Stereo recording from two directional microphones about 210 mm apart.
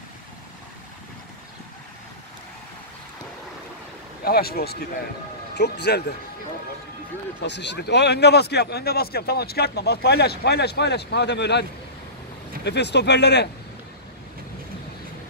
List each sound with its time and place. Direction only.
4.2 s speech: 45° left (ahead or behind)
7.4 s speech: 55° left (ahead or behind)
12.6 s speech: 55° left (ahead or behind)